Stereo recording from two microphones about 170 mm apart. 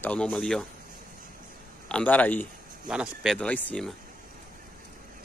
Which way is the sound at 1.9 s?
10° left (ahead or behind).